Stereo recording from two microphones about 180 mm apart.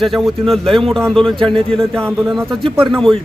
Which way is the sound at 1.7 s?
Centre (ahead or behind).